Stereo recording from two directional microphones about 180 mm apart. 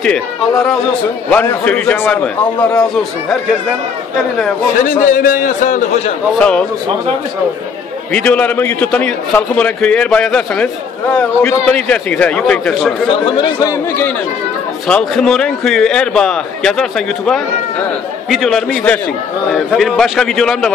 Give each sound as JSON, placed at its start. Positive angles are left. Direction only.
{"t": 0.0, "sound": "a man's voice", "side_deg": 5}
{"t": 5.0, "sound": "a man's voice", "side_deg": 50}
{"t": 6.3, "sound": "a man's voice", "side_deg": 5}
{"t": 8.1, "sound": "a man's voice", "side_deg": 5}
{"t": 13.1, "sound": "speech", "side_deg": 25}
{"t": 14.9, "sound": "a man's voice", "side_deg": 5}
{"t": 18.3, "sound": "a man's voice", "side_deg": 0}